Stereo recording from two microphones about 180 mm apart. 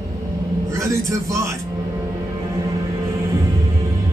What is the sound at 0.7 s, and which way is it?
Music, 15° right (ahead or behind).